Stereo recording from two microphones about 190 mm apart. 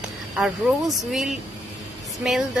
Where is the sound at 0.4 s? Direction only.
Centre (ahead or behind).